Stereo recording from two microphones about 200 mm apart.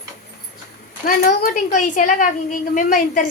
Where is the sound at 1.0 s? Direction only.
45° left (ahead or behind).